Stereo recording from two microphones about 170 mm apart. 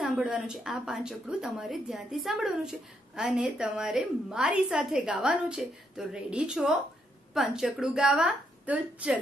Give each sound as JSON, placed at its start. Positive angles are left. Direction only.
{"t": 0.0, "sound": "a woman's voice", "side_deg": -5}